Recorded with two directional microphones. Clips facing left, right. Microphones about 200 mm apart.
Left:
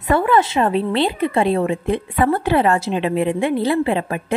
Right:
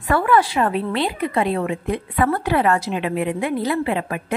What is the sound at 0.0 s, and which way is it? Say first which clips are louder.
A woman's voice: left 2 dB; 20° left (ahead or behind).